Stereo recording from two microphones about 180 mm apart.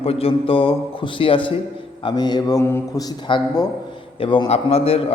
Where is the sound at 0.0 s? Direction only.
35° left (ahead or behind).